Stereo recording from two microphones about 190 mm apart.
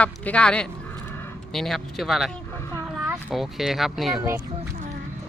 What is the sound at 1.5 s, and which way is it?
Speech, centre (ahead or behind).